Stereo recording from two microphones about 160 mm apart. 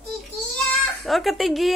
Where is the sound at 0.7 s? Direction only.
Centre (ahead or behind).